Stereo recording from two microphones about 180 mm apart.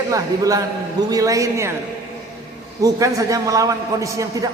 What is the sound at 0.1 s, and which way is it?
A man's voice, 20° right (ahead or behind).